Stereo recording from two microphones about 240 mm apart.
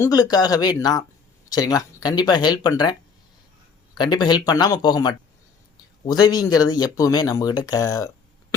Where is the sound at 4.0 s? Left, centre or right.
Centre.